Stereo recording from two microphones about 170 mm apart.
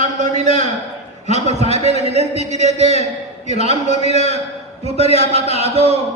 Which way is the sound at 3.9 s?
40° left (ahead or behind).